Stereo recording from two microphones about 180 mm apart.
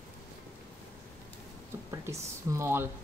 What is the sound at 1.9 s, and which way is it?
Speech, 15° right (ahead or behind).